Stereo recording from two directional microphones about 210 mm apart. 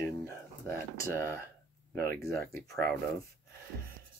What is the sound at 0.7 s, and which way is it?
Speech, 15° left (ahead or behind).